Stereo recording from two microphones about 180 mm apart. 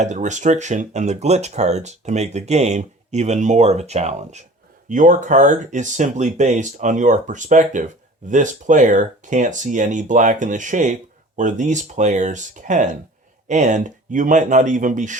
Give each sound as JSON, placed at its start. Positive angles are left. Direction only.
{"t": 0.0, "sound": "speech", "side_deg": -40}